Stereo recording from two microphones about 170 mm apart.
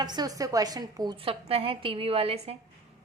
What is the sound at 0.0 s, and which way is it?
A woman's voice, 25° right (ahead or behind).